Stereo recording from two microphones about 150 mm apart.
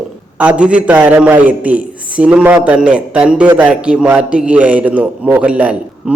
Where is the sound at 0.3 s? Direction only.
10° right (ahead or behind).